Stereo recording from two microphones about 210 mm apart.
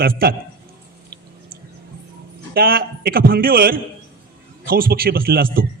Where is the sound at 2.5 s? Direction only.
45° right (ahead or behind).